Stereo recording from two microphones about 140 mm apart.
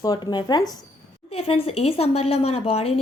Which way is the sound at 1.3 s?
45° left (ahead or behind).